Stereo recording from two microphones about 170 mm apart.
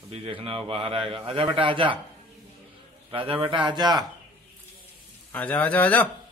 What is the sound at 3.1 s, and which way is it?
Speech, 30° right (ahead or behind).